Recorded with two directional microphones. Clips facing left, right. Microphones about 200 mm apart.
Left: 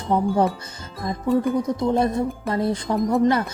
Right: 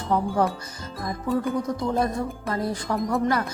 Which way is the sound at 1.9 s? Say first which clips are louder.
Left 5 dB; 25° left (ahead or behind).